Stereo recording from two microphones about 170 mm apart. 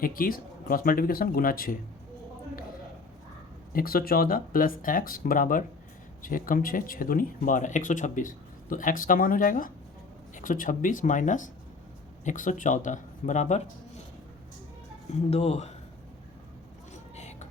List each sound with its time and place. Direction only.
0.0 s speech: 55° left (ahead or behind)
3.7 s speech: 60° left (ahead or behind)
15.1 s speech: 40° left (ahead or behind)
16.9 s vehicle: 40° left (ahead or behind)